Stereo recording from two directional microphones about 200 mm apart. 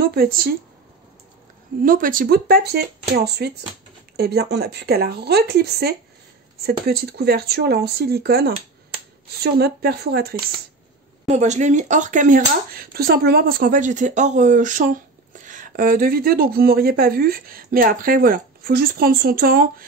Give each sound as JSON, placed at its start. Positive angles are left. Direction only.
{"t": 0.0, "sound": "speech", "side_deg": -50}
{"t": 1.8, "sound": "speech", "side_deg": -45}
{"t": 11.2, "sound": "speech", "side_deg": -35}